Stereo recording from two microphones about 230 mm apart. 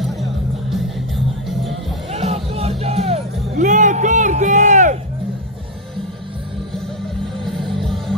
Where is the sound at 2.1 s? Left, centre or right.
Right.